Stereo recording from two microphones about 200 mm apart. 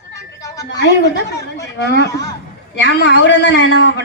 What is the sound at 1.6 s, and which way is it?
A man's voice, 60° left (ahead or behind).